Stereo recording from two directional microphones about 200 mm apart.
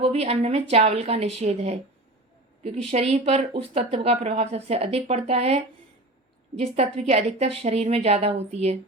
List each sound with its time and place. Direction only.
0.0 s a woman's voice: 30° right (ahead or behind)
2.9 s a woman's voice: 35° right (ahead or behind)